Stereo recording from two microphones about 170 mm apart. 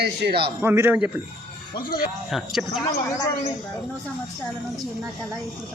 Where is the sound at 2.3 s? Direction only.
Centre (ahead or behind).